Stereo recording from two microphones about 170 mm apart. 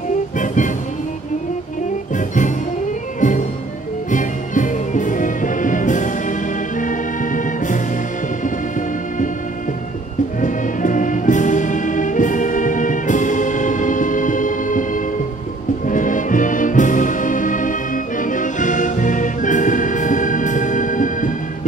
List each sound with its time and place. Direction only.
2.1 s music: 50° left (ahead or behind)
10.4 s music: 50° left (ahead or behind)
15.9 s music: 50° left (ahead or behind)